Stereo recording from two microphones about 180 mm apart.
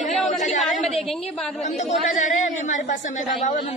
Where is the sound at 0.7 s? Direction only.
Centre (ahead or behind).